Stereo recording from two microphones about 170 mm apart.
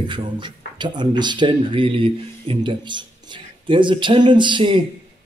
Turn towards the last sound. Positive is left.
turn(degrees=-30)  # may be behind; listen again after turning